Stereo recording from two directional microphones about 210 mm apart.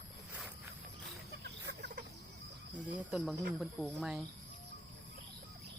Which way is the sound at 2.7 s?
Centre (ahead or behind).